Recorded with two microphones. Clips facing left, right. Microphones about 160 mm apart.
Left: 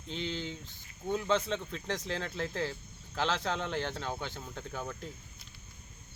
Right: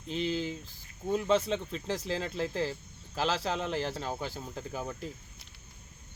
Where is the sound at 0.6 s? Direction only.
35° right (ahead or behind).